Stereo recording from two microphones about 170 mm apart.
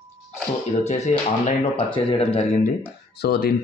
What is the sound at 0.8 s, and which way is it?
Speech, 40° left (ahead or behind).